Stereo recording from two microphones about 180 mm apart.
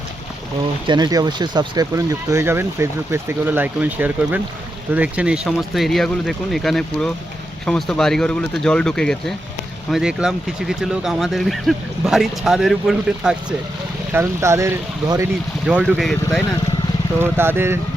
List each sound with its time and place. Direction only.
0.9 s speech: 20° right (ahead or behind); by 13.3 s centre (ahead or behind)
14.1 s speech: 15° right (ahead or behind)
15.6 s speech: 5° right (ahead or behind)
17.2 s speech: 10° right (ahead or behind)